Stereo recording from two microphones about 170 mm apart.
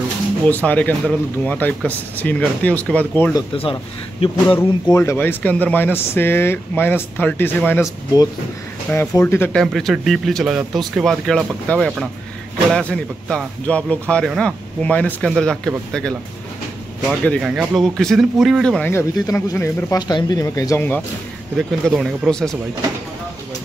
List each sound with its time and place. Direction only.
0.5 s speech: 10° left (ahead or behind)
4.6 s a man's voice: 15° left (ahead or behind)
17.2 s speech: centre (ahead or behind)
21.5 s a man's voice: centre (ahead or behind)